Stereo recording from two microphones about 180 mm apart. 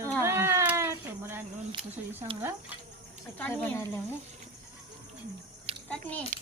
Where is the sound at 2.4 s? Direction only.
10° right (ahead or behind).